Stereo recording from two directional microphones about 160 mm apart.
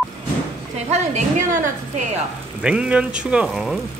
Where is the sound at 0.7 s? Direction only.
45° right (ahead or behind).